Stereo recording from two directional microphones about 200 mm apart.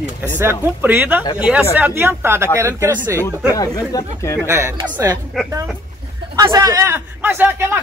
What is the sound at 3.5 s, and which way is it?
Speech, 20° left (ahead or behind).